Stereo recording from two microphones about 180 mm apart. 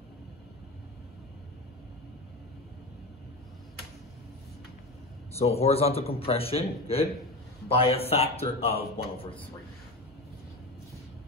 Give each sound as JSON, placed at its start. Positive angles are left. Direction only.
{"t": 5.4, "sound": "a man's voice", "side_deg": 35}